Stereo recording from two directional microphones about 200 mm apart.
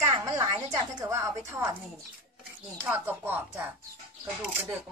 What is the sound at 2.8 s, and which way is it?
Speech, 10° right (ahead or behind).